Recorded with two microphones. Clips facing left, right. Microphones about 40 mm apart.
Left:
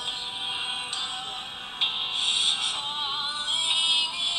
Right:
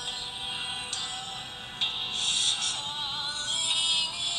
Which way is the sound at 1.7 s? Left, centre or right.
Left.